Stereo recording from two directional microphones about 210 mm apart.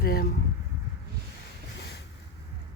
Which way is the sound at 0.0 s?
45° left (ahead or behind).